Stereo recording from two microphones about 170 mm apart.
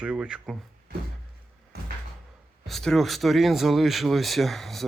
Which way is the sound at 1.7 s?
70° right (ahead or behind).